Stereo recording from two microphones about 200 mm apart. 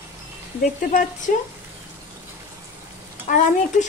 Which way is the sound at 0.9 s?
40° left (ahead or behind).